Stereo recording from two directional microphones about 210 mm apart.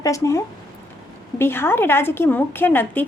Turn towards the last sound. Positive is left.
turn(degrees=10)  # may be behind; listen again after turning